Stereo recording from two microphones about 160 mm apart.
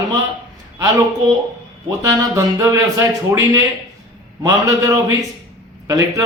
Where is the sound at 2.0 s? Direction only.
20° right (ahead or behind).